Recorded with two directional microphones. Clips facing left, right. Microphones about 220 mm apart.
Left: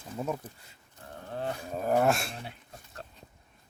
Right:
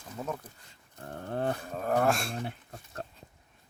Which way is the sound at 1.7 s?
5° left (ahead or behind).